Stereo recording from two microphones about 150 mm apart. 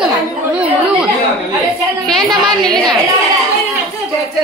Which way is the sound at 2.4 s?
30° right (ahead or behind).